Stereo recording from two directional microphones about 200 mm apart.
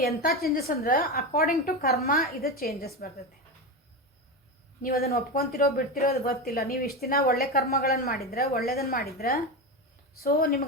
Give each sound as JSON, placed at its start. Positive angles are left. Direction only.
{"t": 0.0, "sound": "speech", "side_deg": 50}
{"t": 4.8, "sound": "speech", "side_deg": 50}